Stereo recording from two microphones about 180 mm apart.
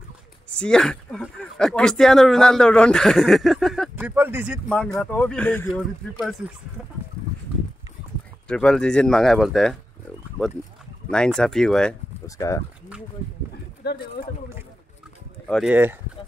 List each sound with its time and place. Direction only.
0.5 s speech: 5° left (ahead or behind)
3.9 s speech: 10° right (ahead or behind)
4.6 s speech: 5° left (ahead or behind)
8.5 s speech: 5° left (ahead or behind)
10.4 s speech: 10° right (ahead or behind)
11.1 s speech: 5° left (ahead or behind)
12.3 s speech: 15° left (ahead or behind)
13.8 s speech: 65° left (ahead or behind)
15.4 s speech: centre (ahead or behind)
15.7 s speech: 10° right (ahead or behind)